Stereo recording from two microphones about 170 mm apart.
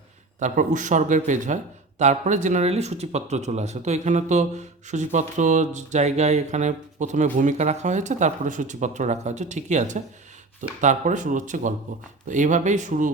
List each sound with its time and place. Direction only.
0.3 s speech: 45° right (ahead or behind)